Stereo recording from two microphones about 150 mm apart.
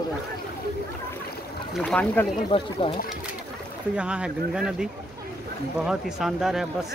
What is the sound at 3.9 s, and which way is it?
Speech, 5° right (ahead or behind).